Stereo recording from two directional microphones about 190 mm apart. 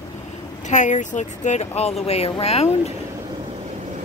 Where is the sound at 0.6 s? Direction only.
40° left (ahead or behind).